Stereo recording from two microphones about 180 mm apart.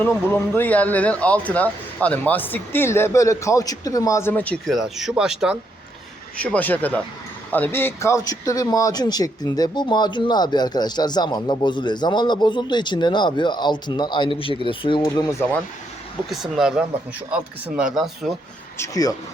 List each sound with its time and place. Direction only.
0.0 s speech: 10° left (ahead or behind)
6.3 s speech: 5° left (ahead or behind)
16.3 s speech: centre (ahead or behind)
18.8 s speech: 20° left (ahead or behind)